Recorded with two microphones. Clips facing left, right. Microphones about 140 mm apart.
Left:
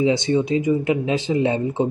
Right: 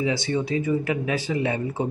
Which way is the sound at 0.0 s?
20° left (ahead or behind).